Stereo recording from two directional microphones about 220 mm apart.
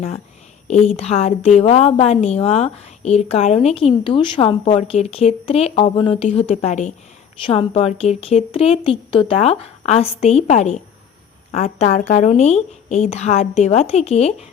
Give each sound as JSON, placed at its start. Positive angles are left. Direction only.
{"t": 0.7, "sound": "a woman's voice", "side_deg": 30}